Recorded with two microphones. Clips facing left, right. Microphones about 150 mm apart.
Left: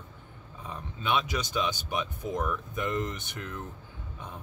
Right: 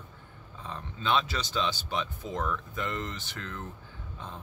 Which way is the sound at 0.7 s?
10° left (ahead or behind).